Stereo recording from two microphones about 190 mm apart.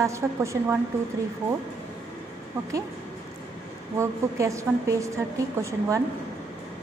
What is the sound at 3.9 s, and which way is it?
A woman's voice, 15° right (ahead or behind).